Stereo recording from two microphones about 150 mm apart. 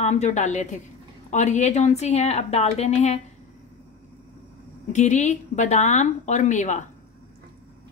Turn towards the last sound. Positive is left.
turn(degrees=55)  # may be behind; listen again after turning